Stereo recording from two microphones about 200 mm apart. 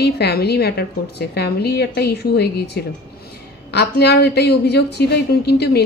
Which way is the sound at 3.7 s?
55° left (ahead or behind).